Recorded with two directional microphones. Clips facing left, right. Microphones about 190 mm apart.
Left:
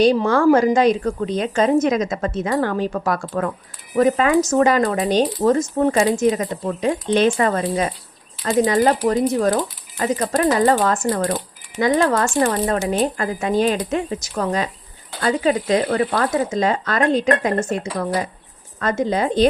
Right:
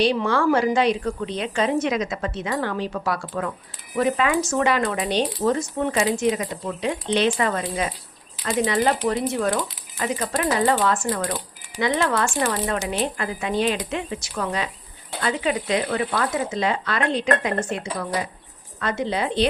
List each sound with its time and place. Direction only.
0.0 s speech: 40° left (ahead or behind)